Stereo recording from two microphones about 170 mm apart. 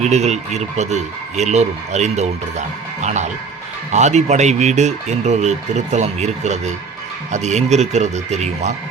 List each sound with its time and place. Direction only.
0.0 s speech: 40° right (ahead or behind)